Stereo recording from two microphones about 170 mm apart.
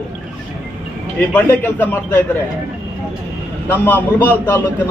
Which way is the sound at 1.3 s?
10° left (ahead or behind).